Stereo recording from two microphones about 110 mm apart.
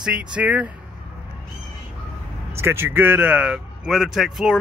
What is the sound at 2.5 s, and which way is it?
Speech, 25° right (ahead or behind).